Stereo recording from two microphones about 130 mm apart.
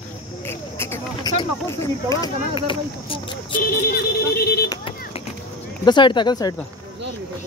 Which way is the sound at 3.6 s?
90° left.